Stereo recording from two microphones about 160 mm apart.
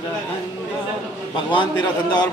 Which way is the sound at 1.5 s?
30° left (ahead or behind).